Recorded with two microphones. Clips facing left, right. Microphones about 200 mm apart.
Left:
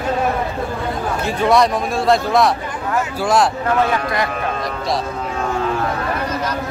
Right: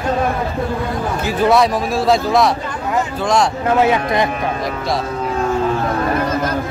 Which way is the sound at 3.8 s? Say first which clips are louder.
Right 5 dB; 20° right (ahead or behind).